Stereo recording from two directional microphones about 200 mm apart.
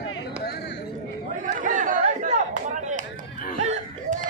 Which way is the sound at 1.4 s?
40° right (ahead or behind).